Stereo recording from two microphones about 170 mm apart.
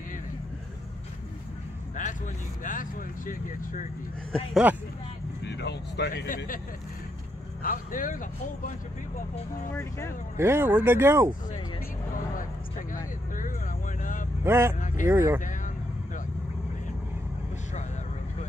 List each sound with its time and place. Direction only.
2.0 s speech: 50° left (ahead or behind)
4.3 s speech: 5° right (ahead or behind)
5.4 s speech: 80° left
6.3 s speech: 55° left (ahead or behind)
7.6 s speech: 55° left (ahead or behind)
9.7 s speech: 15° left (ahead or behind)
10.3 s speech: 15° right (ahead or behind)
12.9 s vehicle: 50° left (ahead or behind)
14.4 s speech: 15° right (ahead or behind)